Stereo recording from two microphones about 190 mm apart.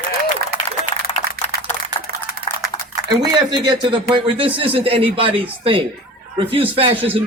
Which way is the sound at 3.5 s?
25° right (ahead or behind).